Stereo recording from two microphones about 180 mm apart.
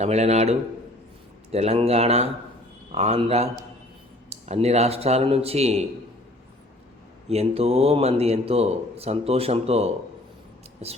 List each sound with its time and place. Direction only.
0.0 s a man's voice: 40° right (ahead or behind)
7.3 s a man's voice: 35° right (ahead or behind)